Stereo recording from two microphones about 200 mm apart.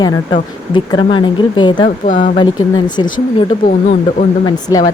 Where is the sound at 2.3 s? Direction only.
20° left (ahead or behind).